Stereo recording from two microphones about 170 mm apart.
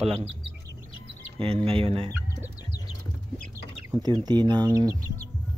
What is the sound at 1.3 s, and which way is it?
Speech, 35° right (ahead or behind).